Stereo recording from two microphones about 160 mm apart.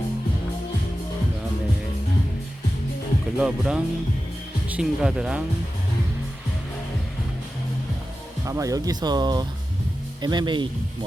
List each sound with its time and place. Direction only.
3.3 s speech: 5° right (ahead or behind)
8.4 s speech: 20° right (ahead or behind)